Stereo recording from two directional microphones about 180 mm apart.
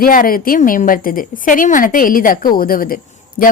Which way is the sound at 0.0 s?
50° left (ahead or behind).